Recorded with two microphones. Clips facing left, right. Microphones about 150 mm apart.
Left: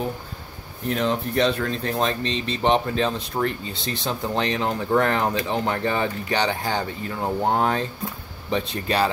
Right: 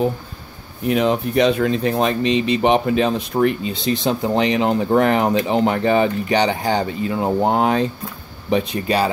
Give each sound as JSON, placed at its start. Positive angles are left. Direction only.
{"t": 0.8, "sound": "speech", "side_deg": -15}